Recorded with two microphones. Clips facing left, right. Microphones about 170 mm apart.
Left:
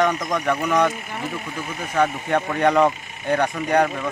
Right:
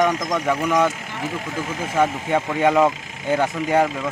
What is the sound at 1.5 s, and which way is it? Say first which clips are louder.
Speech: right 3 dB; 90° right.